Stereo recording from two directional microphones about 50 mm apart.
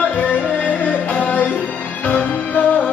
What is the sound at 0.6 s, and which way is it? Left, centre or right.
Music, left.